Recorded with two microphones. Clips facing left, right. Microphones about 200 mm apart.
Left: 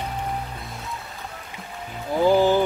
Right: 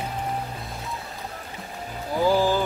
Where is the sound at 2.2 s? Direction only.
20° left (ahead or behind).